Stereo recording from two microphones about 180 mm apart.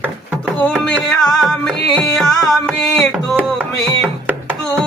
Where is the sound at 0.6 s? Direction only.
5° left (ahead or behind).